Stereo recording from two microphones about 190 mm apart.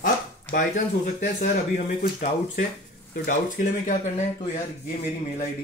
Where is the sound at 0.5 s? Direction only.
40° left (ahead or behind).